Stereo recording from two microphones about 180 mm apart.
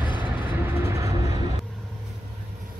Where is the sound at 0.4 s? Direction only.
10° right (ahead or behind).